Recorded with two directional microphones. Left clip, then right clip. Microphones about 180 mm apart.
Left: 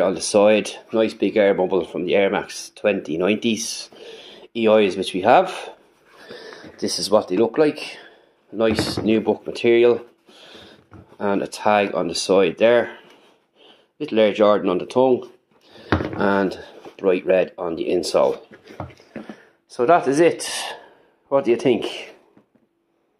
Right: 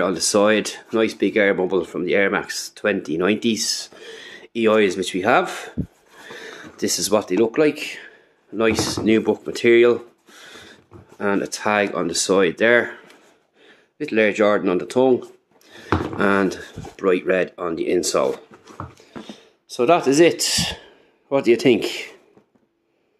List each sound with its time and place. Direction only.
0.0 s speech: 20° right (ahead or behind)
7.0 s speech: 20° right (ahead or behind)
19.2 s speech: 20° right (ahead or behind)